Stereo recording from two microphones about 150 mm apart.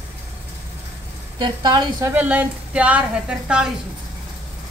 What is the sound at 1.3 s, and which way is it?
Speech, 30° right (ahead or behind).